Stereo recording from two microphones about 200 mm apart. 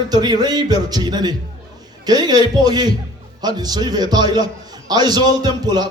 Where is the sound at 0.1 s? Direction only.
20° right (ahead or behind).